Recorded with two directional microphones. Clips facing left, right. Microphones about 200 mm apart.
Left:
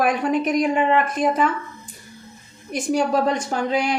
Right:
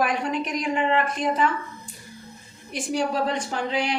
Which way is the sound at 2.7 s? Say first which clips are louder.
Left 5 dB; 45° left (ahead or behind).